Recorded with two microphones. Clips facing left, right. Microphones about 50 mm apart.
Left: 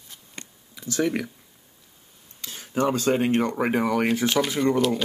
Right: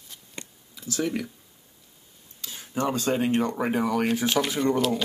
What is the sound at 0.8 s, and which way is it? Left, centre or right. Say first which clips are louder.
Speech: left 3 dB; left.